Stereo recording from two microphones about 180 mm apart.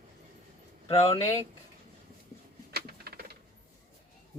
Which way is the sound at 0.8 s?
35° left (ahead or behind).